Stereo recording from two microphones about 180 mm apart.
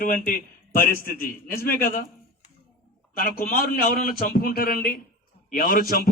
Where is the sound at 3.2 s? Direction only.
55° left (ahead or behind).